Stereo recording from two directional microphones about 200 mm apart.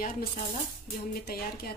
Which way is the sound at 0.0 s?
45° left (ahead or behind).